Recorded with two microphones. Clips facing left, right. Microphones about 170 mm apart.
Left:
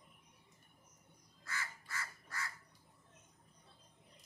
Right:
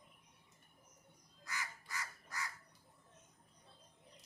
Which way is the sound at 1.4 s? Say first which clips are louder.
Even; 15° right (ahead or behind).